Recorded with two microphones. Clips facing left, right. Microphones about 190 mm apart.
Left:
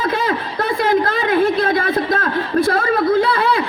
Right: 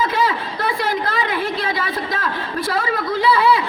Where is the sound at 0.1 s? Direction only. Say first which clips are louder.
Left 1 dB; 55° left (ahead or behind).